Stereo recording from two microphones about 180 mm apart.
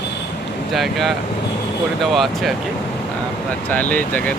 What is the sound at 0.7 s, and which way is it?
Speech, centre (ahead or behind).